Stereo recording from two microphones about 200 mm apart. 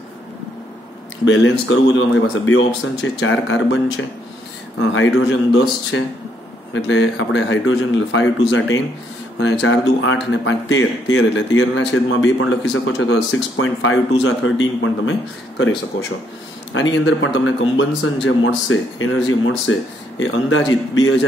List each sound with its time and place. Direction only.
1.2 s speech: 70° left (ahead or behind)
5.3 s a man's voice: 75° left (ahead or behind)